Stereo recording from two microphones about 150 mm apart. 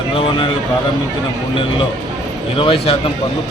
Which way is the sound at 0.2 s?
35° left (ahead or behind).